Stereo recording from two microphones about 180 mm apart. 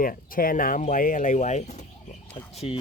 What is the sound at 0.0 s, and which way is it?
Speech, 50° left (ahead or behind).